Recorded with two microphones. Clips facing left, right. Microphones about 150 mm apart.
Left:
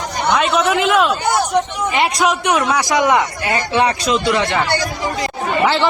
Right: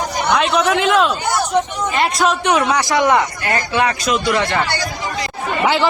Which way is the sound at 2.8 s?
15° left (ahead or behind).